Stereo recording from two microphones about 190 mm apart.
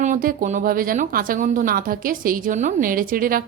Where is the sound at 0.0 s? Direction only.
45° right (ahead or behind).